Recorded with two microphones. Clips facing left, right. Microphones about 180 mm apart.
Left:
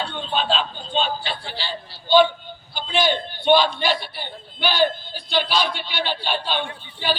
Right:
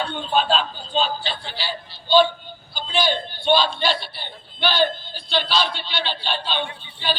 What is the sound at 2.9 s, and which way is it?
A man's voice, 20° left (ahead or behind).